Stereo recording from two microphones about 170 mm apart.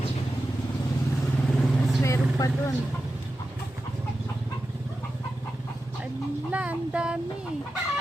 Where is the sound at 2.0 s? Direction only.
20° left (ahead or behind).